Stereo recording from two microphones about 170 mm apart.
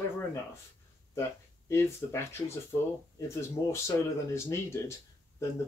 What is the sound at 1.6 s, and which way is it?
Speech, 15° left (ahead or behind).